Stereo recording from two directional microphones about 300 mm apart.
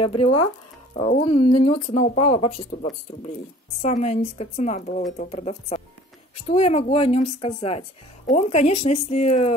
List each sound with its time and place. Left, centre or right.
0.0 s a woman's voice: centre
3.8 s a woman's voice: left